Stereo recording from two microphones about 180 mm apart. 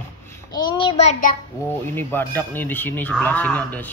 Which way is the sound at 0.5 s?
25° left (ahead or behind).